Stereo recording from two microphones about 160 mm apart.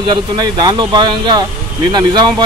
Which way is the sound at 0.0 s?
30° right (ahead or behind).